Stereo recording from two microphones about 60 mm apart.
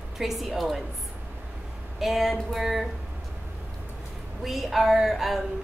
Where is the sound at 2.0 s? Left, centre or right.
Centre.